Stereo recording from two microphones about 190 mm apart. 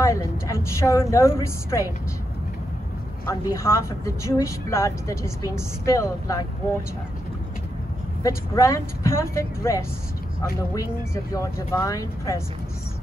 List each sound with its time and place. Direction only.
0.0 s a woman's voice: 15° left (ahead or behind)
3.3 s a woman's voice: 15° left (ahead or behind)
8.2 s a woman's voice: 15° left (ahead or behind)
11.3 s a woman's voice: 15° left (ahead or behind)